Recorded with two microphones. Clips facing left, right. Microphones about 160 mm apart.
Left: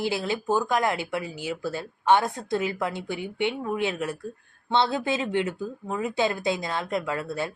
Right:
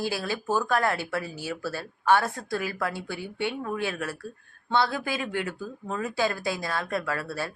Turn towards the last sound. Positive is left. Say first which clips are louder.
# left 2 dB
turn(degrees=20)  # may be behind; listen again after turning